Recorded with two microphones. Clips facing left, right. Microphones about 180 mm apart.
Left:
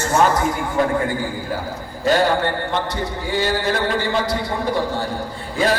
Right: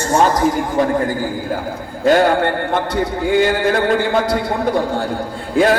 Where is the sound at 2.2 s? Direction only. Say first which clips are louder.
Right 4 dB; 50° right (ahead or behind).